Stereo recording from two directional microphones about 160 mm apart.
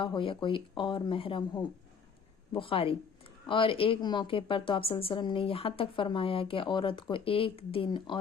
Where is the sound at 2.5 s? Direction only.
35° left (ahead or behind).